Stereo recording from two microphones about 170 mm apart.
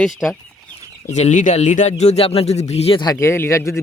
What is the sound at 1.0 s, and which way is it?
Speech, 40° left (ahead or behind).